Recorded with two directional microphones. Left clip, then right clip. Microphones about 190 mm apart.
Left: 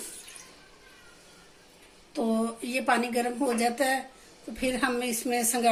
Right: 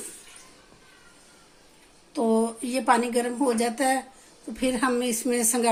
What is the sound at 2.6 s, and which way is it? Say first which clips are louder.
A woman's voice: right 2 dB; 55° right (ahead or behind).